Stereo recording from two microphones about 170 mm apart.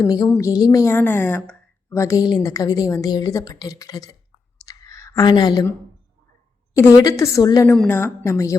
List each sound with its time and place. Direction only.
0.1 s a woman's voice: 20° left (ahead or behind)
4.5 s clicking: 20° left (ahead or behind)
6.7 s a woman's voice: 15° left (ahead or behind)